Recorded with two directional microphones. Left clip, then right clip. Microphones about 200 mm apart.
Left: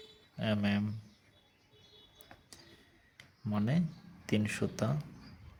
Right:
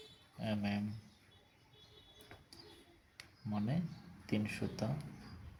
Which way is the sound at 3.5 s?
45° left (ahead or behind).